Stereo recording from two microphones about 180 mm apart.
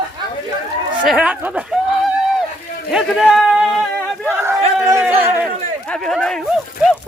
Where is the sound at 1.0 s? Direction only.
5° right (ahead or behind).